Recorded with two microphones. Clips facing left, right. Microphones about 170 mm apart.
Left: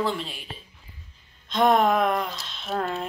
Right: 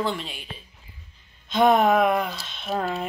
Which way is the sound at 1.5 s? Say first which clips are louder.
Right 2 dB; centre (ahead or behind).